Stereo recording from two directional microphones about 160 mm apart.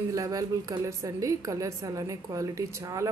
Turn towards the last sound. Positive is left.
turn(degrees=-20)  # may be behind; listen again after turning